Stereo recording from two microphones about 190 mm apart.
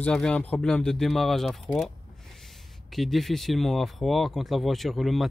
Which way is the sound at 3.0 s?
Centre (ahead or behind).